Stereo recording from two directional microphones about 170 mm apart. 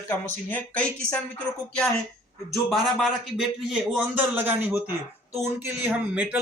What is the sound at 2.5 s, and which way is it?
Speech, centre (ahead or behind).